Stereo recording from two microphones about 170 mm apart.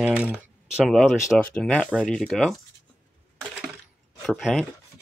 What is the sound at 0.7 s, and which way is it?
Speech, centre (ahead or behind).